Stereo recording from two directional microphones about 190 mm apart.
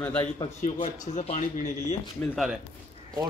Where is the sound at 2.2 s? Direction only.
Centre (ahead or behind).